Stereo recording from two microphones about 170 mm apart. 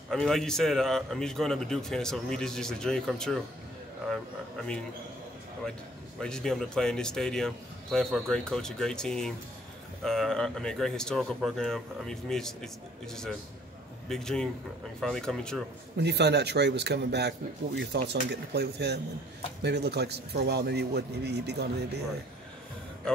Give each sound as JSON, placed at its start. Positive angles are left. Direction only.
{"t": 0.1, "sound": "a man's voice", "side_deg": 5}
{"t": 6.2, "sound": "a man's voice", "side_deg": 5}
{"t": 16.0, "sound": "a man's voice", "side_deg": -85}